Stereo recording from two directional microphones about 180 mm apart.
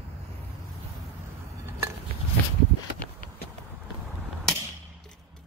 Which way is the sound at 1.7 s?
15° right (ahead or behind).